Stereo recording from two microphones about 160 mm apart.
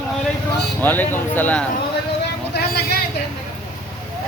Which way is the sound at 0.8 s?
10° left (ahead or behind).